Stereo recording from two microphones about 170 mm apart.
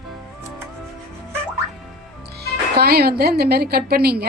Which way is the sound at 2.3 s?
65° right (ahead or behind).